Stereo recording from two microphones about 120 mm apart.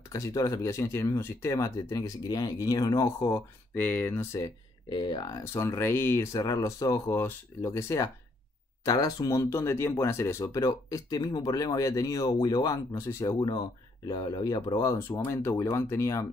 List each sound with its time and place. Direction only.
0.1 s speech: 25° left (ahead or behind)
3.7 s speech: 15° left (ahead or behind)
4.8 s speech: 40° left (ahead or behind)